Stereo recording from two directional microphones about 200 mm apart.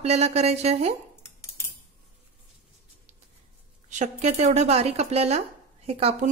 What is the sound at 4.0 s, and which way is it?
A woman's voice, 35° right (ahead or behind).